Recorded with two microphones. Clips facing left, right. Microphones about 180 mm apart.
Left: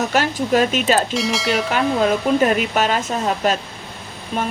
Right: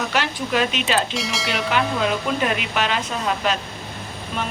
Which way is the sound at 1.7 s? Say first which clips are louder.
Left 3 dB; 40° left (ahead or behind).